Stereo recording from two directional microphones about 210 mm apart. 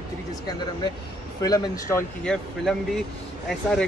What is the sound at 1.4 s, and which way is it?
Speech, 15° left (ahead or behind).